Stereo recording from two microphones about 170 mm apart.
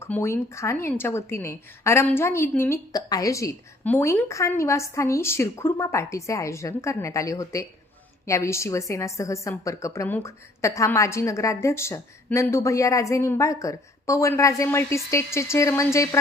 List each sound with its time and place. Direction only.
0.0 s a woman's voice: 15° left (ahead or behind)